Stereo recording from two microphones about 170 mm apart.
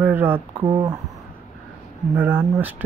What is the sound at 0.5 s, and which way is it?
Speech, 30° right (ahead or behind).